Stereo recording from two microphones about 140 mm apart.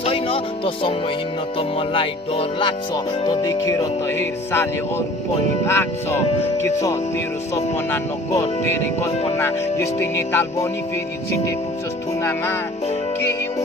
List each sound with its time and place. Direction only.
0.0 s music: 45° left (ahead or behind)
1.8 s music: 40° left (ahead or behind)
3.6 s speech: 20° left (ahead or behind)
9.4 s speech: 20° left (ahead or behind)